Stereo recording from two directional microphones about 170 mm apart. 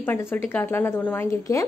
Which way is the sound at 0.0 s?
10° left (ahead or behind).